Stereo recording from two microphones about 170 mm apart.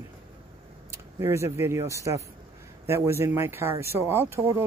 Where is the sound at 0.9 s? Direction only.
15° right (ahead or behind).